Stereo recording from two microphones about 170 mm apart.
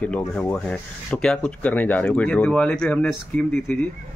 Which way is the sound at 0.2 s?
10° left (ahead or behind).